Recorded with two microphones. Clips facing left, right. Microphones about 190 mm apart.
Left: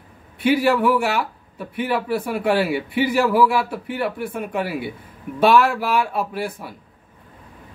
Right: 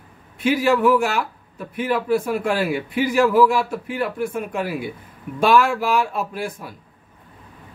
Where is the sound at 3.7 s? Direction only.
45° right (ahead or behind).